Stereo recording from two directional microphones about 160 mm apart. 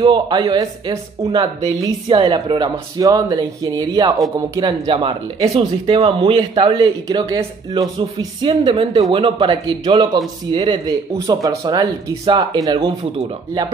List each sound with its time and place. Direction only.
0.0 s speech: 30° right (ahead or behind)